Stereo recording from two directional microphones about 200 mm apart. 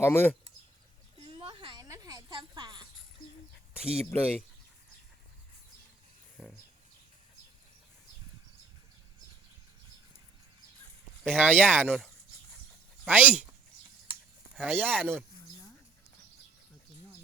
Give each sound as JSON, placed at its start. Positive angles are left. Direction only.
{"t": 0.0, "sound": "speech", "side_deg": 10}
{"t": 1.2, "sound": "a sound", "side_deg": -25}
{"t": 3.9, "sound": "speech", "side_deg": 0}
{"t": 6.3, "sound": "a sound", "side_deg": 0}
{"t": 11.2, "sound": "speech", "side_deg": -10}
{"t": 14.5, "sound": "speech", "side_deg": -10}